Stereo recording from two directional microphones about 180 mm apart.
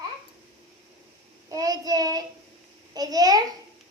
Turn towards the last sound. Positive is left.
turn(degrees=-20)  # may be behind; listen again after turning